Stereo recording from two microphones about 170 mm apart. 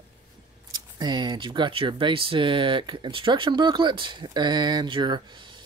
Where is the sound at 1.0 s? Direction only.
25° right (ahead or behind).